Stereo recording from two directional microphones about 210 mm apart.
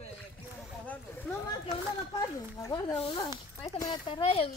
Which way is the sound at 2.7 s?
25° left (ahead or behind).